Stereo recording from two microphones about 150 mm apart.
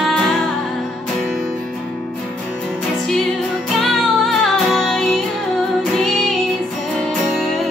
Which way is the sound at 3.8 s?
5° left (ahead or behind).